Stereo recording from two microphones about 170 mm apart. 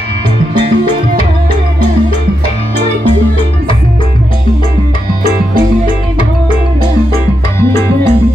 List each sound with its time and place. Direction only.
7.6 s music: 15° left (ahead or behind)